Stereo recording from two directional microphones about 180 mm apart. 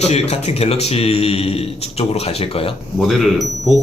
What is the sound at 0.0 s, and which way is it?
A man's voice, 35° left (ahead or behind).